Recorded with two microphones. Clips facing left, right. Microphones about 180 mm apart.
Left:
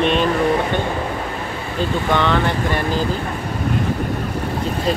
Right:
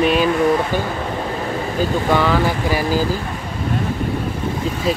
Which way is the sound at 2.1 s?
5° right (ahead or behind).